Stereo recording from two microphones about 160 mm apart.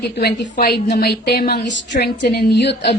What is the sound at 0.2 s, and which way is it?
Speech, 85° left.